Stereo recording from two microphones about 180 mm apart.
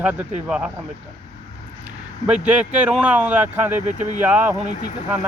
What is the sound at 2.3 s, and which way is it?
Speech, 10° right (ahead or behind).